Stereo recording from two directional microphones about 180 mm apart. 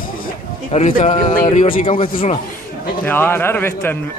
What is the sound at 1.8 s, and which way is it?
Speech, 30° left (ahead or behind).